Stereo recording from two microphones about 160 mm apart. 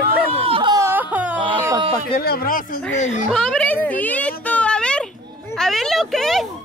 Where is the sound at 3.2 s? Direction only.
5° left (ahead or behind).